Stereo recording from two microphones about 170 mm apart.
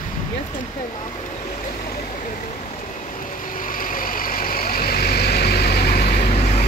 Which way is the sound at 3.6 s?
55° left (ahead or behind).